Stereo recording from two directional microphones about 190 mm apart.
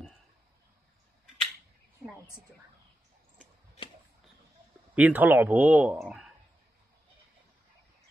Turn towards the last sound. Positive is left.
turn(degrees=0)  # may be behind; listen again after turning